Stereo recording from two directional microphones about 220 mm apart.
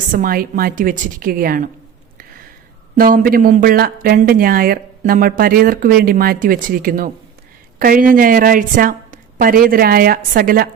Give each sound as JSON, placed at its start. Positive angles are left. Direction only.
{"t": 0.1, "sound": "speech", "side_deg": -40}
{"t": 2.9, "sound": "speech", "side_deg": -40}